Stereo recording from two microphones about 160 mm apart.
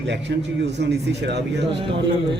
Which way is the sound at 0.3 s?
90° right.